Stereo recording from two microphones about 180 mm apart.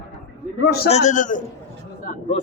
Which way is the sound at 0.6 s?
65° left (ahead or behind).